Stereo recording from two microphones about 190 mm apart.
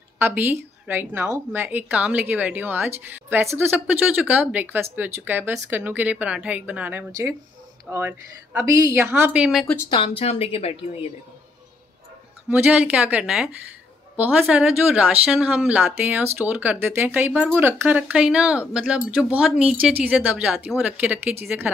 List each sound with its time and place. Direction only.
0.2 s speech: 10° right (ahead or behind)
9.8 s a woman's voice: 25° left (ahead or behind)
12.4 s speech: 10° right (ahead or behind)